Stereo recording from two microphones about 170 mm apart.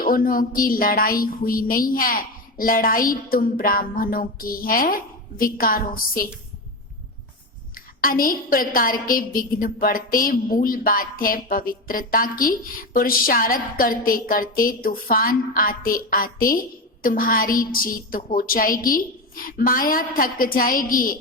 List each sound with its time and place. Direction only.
0.0 s a woman's voice: 55° left (ahead or behind)
8.0 s a woman's voice: 55° left (ahead or behind)